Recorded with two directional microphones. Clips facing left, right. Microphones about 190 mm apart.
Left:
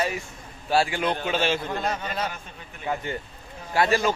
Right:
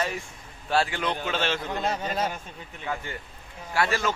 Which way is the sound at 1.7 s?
25° right (ahead or behind).